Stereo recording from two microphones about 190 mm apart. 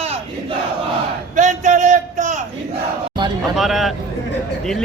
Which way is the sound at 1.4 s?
40° right (ahead or behind).